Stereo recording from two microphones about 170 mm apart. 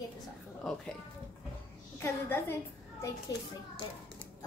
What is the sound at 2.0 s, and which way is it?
Speech, 15° left (ahead or behind).